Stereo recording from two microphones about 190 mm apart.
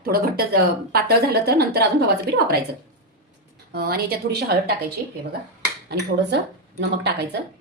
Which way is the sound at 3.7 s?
55° right (ahead or behind).